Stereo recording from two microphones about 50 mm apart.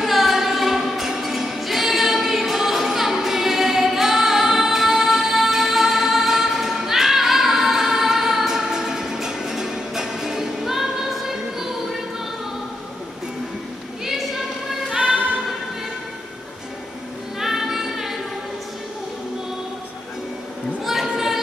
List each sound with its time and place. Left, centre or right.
0.0 s music: centre
14.9 s music: right
17.4 s music: centre
20.8 s children playing: centre
21.1 s a sound: centre